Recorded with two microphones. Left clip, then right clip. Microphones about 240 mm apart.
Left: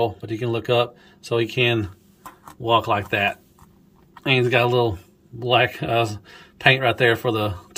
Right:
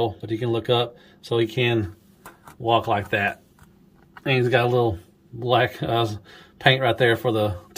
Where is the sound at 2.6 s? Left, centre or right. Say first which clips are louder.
Left 1 dB; centre.